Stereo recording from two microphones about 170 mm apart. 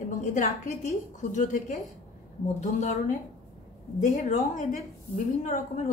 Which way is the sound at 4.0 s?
45° left (ahead or behind).